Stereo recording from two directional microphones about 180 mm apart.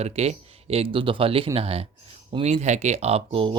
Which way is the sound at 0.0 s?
35° right (ahead or behind).